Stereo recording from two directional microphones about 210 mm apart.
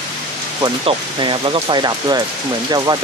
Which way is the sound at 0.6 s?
20° right (ahead or behind).